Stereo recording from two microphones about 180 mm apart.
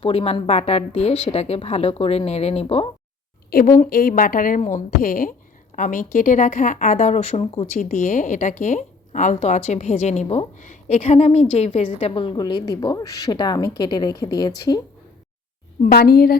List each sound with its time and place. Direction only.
0.0 s a woman's voice: 30° left (ahead or behind)
3.8 s a woman's voice: 55° left (ahead or behind); by 14.5 s 20° left (ahead or behind)
15.8 s a woman's voice: 60° left (ahead or behind)